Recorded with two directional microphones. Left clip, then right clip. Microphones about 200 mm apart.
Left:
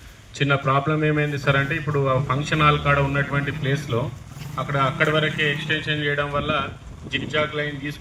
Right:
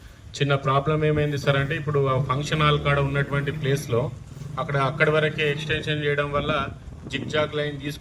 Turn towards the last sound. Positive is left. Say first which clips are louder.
# left 1 dB
turn(degrees=-40)  # may be behind; listen again after turning